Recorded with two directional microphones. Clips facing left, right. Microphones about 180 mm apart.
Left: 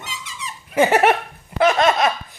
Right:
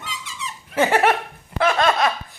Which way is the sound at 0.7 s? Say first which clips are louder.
Left 3 dB; 15° left (ahead or behind).